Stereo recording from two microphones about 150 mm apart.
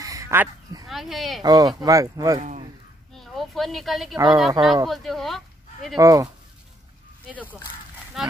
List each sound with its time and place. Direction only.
0.0 s a sound: 20° right (ahead or behind)
0.8 s speech: centre (ahead or behind)
1.4 s speech: 25° right (ahead or behind)
3.2 s speech: centre (ahead or behind)
5.9 s speech: 20° right (ahead or behind)
8.2 s speech: centre (ahead or behind)